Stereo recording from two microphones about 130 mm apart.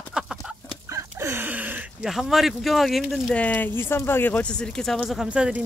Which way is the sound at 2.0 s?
Centre (ahead or behind).